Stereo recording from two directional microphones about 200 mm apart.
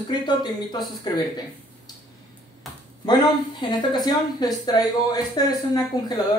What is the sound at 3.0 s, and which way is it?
Speech, 20° left (ahead or behind).